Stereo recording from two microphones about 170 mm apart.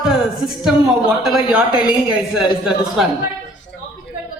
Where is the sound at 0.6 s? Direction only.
5° right (ahead or behind).